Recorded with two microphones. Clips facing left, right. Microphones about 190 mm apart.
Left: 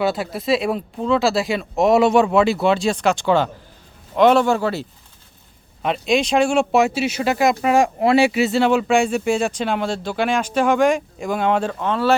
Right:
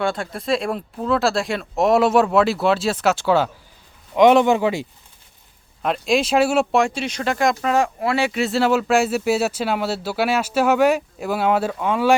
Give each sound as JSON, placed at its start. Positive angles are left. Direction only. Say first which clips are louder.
{"t": 0.0, "sound": "speech", "louder": "left 2 dB", "side_deg": 5}
{"t": 5.8, "sound": "speech", "louder": "left 1 dB", "side_deg": 0}
{"t": 8.4, "sound": "speech", "louder": "left 2 dB", "side_deg": 0}